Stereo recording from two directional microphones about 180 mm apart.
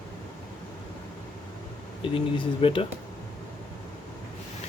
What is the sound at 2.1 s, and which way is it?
Speech, 30° left (ahead or behind).